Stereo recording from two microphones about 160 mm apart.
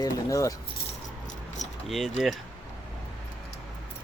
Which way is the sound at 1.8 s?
Centre (ahead or behind).